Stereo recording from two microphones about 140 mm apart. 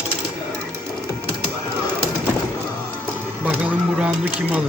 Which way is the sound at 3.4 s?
10° right (ahead or behind).